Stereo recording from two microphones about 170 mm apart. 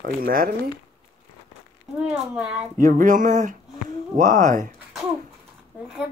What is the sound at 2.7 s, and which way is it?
Speech, 50° right (ahead or behind).